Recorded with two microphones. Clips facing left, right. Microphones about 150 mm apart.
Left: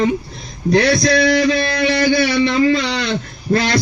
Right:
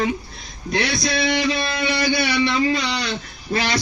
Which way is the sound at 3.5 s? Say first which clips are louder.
Left 7 dB; 35° left (ahead or behind).